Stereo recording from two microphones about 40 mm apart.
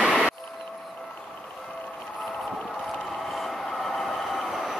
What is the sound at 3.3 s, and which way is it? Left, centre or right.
Train, centre.